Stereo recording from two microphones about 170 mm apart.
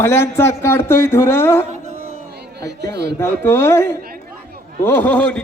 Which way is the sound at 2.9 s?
75° right (ahead or behind).